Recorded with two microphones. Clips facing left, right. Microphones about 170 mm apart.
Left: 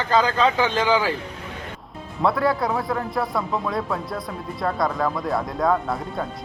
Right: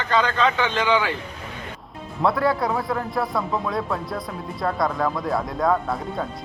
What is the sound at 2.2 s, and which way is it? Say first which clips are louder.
A man's voice: even; centre (ahead or behind).